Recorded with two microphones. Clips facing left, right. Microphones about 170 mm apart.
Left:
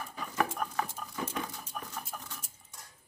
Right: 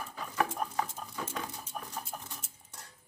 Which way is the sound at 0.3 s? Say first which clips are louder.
Even; 25° right (ahead or behind).